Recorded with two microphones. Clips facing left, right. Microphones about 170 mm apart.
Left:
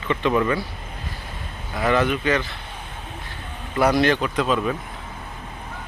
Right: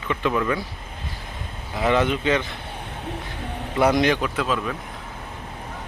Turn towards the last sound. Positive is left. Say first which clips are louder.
# left 2 dB
turn(degrees=0)  # may be behind; listen again after turning